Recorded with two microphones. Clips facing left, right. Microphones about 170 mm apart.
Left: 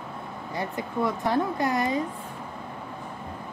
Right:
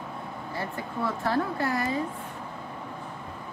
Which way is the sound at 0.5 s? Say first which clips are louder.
Left 4 dB; 15° left (ahead or behind).